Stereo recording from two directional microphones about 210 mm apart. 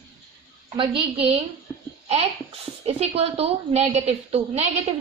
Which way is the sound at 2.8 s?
30° right (ahead or behind).